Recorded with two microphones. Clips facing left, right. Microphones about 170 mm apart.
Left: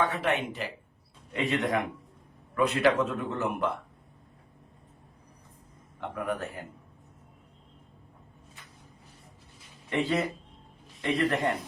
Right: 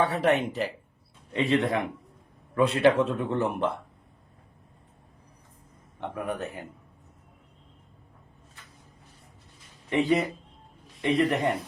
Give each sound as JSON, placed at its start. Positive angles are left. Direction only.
{"t": 0.0, "sound": "a man's voice", "side_deg": -35}
{"t": 6.0, "sound": "a man's voice", "side_deg": -20}
{"t": 9.9, "sound": "a man's voice", "side_deg": -15}